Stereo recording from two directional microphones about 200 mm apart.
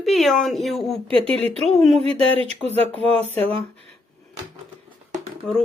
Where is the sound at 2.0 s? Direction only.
30° right (ahead or behind).